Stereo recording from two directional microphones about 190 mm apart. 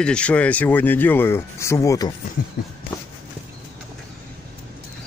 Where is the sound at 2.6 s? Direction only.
55° left (ahead or behind).